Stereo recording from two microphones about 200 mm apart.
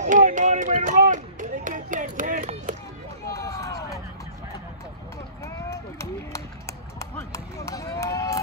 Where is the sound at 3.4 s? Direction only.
15° left (ahead or behind).